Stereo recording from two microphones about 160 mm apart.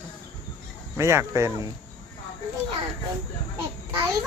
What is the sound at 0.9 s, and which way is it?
Speech, 15° right (ahead or behind).